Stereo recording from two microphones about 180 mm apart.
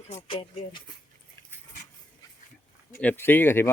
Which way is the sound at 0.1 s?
35° left (ahead or behind).